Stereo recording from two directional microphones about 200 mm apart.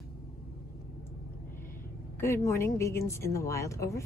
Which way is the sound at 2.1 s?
10° left (ahead or behind).